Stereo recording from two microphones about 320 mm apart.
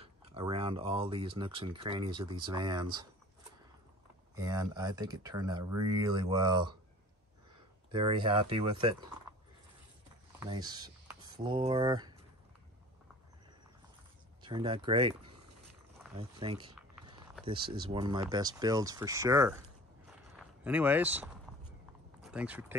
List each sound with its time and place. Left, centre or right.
0.0 s speech: centre
4.4 s speech: centre
7.9 s speech: centre
10.4 s speech: centre
14.4 s speech: centre